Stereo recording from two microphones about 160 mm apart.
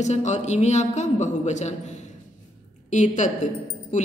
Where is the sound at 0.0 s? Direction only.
45° left (ahead or behind).